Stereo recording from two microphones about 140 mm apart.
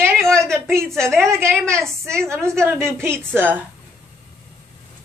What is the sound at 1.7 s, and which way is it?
A woman's voice, 20° right (ahead or behind).